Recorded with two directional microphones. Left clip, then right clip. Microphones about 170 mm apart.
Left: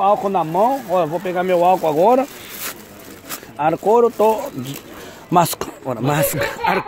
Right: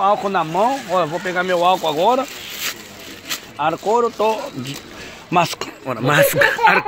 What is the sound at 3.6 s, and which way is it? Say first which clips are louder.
Speech: left 3 dB; 55° left (ahead or behind).